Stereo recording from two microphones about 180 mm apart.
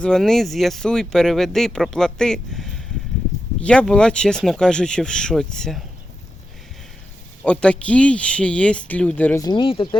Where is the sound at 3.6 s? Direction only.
5° left (ahead or behind).